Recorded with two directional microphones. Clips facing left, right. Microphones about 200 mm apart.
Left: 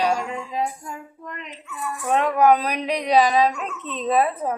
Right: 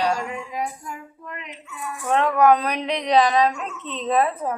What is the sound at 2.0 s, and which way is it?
A woman's voice, 10° left (ahead or behind).